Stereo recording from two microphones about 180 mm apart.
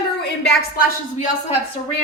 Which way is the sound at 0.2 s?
65° left (ahead or behind).